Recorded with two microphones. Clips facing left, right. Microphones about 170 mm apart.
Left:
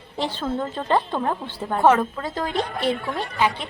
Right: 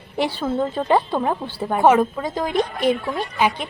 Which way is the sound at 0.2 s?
10° right (ahead or behind).